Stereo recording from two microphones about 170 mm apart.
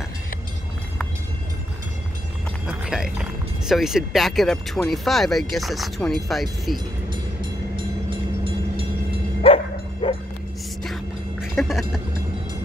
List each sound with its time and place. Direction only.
2.6 s speech: 5° right (ahead or behind)
7.7 s vehicle: 30° right (ahead or behind)
9.5 s bow-wow: 35° left (ahead or behind)
10.0 s dog: 30° left (ahead or behind)
11.4 s a sound: centre (ahead or behind)